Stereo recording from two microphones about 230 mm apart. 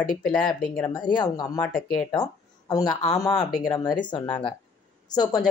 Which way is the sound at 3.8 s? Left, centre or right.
Centre.